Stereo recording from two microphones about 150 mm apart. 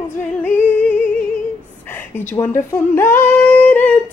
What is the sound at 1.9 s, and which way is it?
Speech, 15° left (ahead or behind).